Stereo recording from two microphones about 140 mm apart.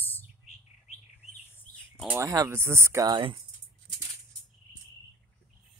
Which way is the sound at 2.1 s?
25° right (ahead or behind).